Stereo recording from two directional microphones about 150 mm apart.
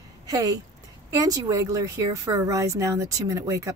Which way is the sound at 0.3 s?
25° right (ahead or behind).